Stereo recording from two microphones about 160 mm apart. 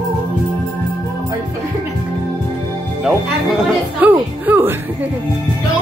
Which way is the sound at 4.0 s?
10° right (ahead or behind).